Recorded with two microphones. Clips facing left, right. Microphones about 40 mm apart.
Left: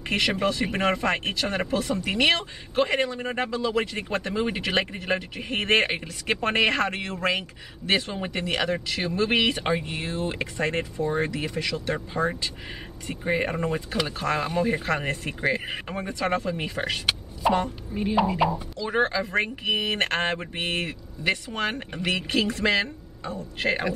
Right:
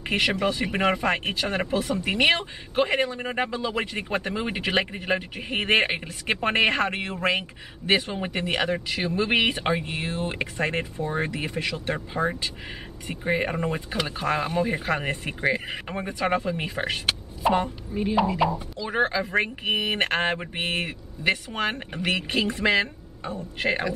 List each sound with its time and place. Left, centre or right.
0.1 s speech: centre
12.1 s speech: centre
19.6 s speech: centre